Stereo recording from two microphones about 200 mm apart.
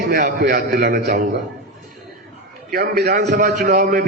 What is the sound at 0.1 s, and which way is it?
A man's voice, 50° right (ahead or behind).